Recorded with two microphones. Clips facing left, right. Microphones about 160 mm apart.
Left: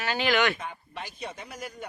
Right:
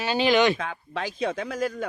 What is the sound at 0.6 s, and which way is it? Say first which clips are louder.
Speech: right 7 dB; 90° right.